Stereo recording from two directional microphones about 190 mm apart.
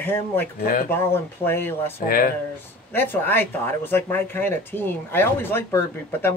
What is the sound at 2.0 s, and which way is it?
Speech, 50° left (ahead or behind).